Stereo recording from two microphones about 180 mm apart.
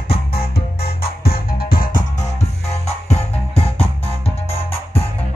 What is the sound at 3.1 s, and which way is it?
Music, 35° left (ahead or behind).